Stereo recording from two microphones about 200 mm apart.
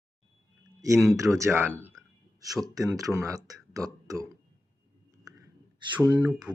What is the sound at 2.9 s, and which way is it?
Speech, 15° right (ahead or behind).